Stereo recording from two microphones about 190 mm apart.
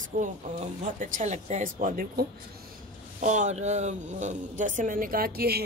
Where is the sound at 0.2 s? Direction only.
40° right (ahead or behind).